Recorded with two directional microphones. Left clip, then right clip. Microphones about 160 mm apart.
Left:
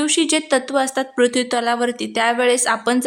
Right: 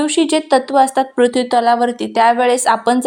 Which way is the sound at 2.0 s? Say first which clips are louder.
Right 6 dB; 45° left (ahead or behind).